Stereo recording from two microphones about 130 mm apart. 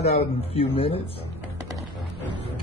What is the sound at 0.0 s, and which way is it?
Speech, 50° left (ahead or behind).